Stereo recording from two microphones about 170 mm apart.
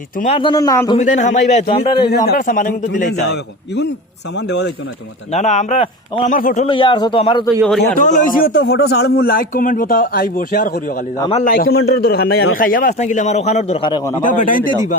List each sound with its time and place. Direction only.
0.3 s a man's voice: 25° left (ahead or behind)
0.9 s a man's voice: 45° left (ahead or behind)
1.7 s a man's voice: 30° left (ahead or behind)
2.2 s a man's voice: 60° left (ahead or behind)
4.4 s speech: 90° left
5.3 s a man's voice: 40° left (ahead or behind)
6.3 s a man's voice: 50° left (ahead or behind)
6.7 s a man's voice: 30° left (ahead or behind)
7.9 s speech: 50° left (ahead or behind)
13.8 s a man's voice: 20° left (ahead or behind)
14.2 s a man's voice: 50° left (ahead or behind)